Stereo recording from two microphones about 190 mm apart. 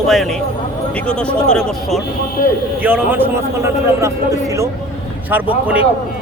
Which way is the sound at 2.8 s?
10° right (ahead or behind).